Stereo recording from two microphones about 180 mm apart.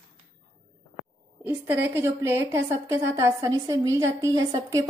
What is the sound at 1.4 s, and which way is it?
A woman's voice, 10° right (ahead or behind).